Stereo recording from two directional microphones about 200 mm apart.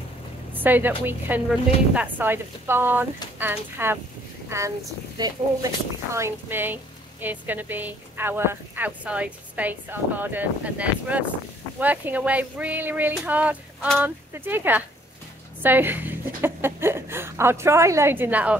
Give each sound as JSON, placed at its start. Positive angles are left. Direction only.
{"t": 0.5, "sound": "a woman's voice", "side_deg": -10}